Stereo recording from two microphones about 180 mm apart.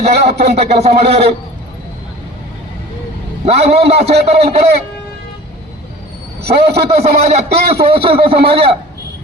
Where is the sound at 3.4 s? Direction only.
35° right (ahead or behind).